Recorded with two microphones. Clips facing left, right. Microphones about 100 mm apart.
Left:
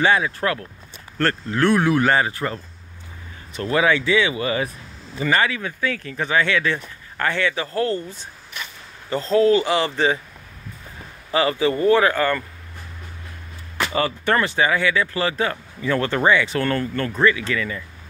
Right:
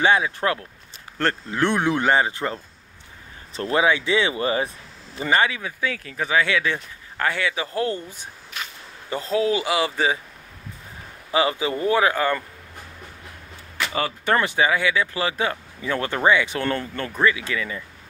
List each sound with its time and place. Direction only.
0.0 s speech: 20° right (ahead or behind)
3.8 s speech: 15° right (ahead or behind)
4.1 s speech: 35° right (ahead or behind)
5.3 s speech: 20° right (ahead or behind)
11.3 s speech: 15° right (ahead or behind)
13.9 s speech: 10° right (ahead or behind)